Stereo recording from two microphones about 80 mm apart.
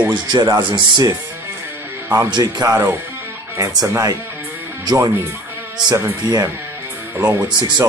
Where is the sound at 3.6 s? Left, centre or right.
Right.